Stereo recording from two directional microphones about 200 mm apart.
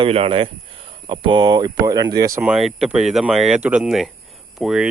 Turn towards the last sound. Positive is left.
turn(degrees=-5)  # may be behind; listen again after turning